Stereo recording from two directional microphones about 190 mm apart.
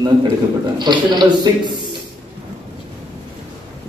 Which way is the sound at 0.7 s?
25° right (ahead or behind).